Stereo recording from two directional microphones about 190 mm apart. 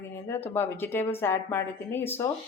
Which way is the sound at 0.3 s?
10° left (ahead or behind).